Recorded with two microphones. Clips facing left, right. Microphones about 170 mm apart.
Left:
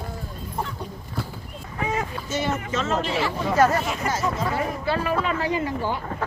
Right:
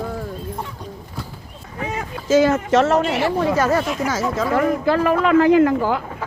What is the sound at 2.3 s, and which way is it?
Speech, 90° right.